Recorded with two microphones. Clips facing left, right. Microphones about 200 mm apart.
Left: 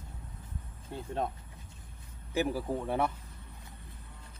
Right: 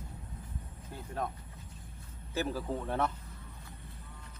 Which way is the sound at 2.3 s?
15° left (ahead or behind).